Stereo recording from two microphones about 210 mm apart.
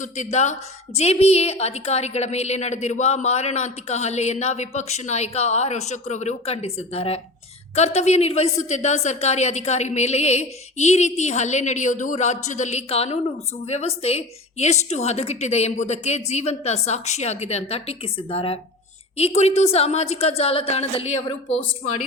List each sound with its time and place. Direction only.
0.0 s a woman's voice: 35° left (ahead or behind)